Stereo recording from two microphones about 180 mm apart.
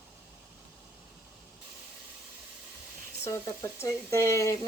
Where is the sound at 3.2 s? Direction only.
15° left (ahead or behind).